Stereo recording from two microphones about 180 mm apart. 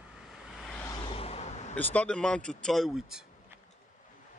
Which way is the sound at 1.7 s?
10° left (ahead or behind).